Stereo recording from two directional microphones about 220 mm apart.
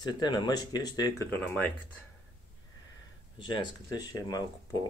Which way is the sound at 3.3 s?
20° left (ahead or behind).